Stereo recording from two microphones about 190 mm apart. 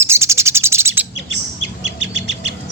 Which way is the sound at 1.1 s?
90° left.